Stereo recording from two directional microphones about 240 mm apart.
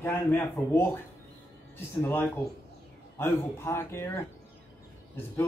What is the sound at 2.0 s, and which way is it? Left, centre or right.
A woman's voice, centre.